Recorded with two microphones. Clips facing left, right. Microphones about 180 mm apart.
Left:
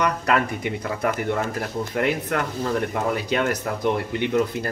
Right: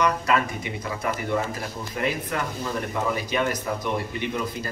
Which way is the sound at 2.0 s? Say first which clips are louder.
Left 4 dB; 60° left (ahead or behind).